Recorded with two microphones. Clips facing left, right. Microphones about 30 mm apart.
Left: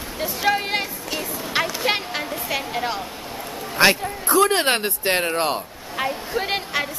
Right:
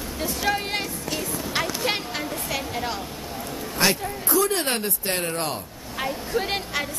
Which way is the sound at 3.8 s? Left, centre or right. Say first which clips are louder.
Left 6 dB; left.